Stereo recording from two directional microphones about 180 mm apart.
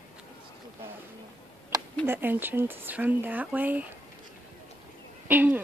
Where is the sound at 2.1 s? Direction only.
10° right (ahead or behind).